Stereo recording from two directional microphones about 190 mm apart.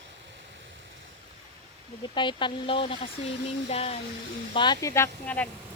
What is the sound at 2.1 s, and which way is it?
Speech, 25° left (ahead or behind).